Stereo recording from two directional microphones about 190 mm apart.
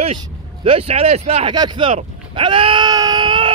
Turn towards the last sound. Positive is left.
turn(degrees=-25)  # may be behind; listen again after turning